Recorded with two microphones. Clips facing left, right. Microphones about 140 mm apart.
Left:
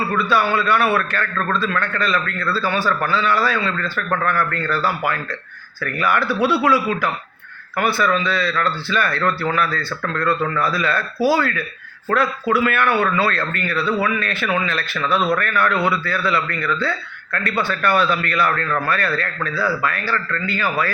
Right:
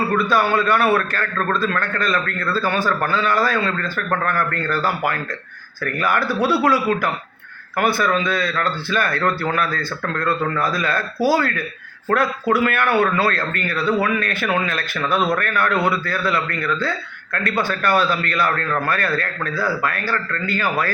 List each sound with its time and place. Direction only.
0.2 s a man's voice: 45° right (ahead or behind)